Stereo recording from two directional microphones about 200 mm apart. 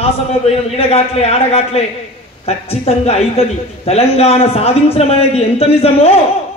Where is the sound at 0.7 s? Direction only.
30° left (ahead or behind).